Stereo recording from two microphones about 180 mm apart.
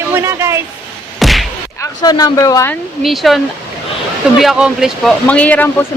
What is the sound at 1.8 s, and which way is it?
Speech, 20° left (ahead or behind).